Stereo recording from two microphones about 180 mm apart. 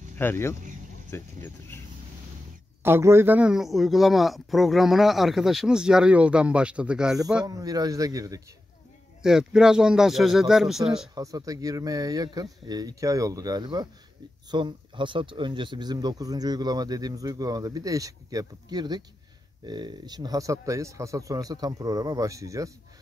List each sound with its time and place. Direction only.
0.2 s speech: 10° left (ahead or behind)
2.8 s a man's voice: 15° right (ahead or behind)
7.4 s speech: 20° right (ahead or behind)
9.2 s a man's voice: 5° right (ahead or behind)
11.1 s speech: 20° right (ahead or behind)